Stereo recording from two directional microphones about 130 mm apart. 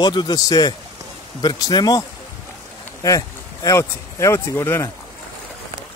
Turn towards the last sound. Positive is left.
turn(degrees=20)  # may be behind; listen again after turning